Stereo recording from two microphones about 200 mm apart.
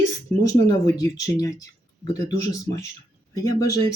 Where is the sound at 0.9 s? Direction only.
15° left (ahead or behind).